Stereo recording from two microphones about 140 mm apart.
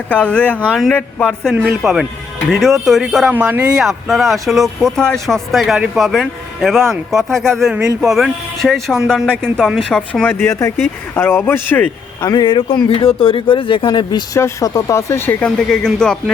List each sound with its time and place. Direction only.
0.1 s speech: 10° left (ahead or behind)
10.3 s speech: 15° left (ahead or behind)
12.3 s speech: 35° left (ahead or behind); by 16.3 s 5° left (ahead or behind)